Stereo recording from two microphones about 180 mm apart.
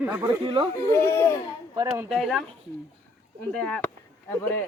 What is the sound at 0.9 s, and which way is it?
Speech, 15° left (ahead or behind).